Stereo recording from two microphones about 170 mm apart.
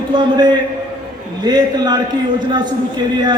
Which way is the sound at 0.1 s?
25° right (ahead or behind).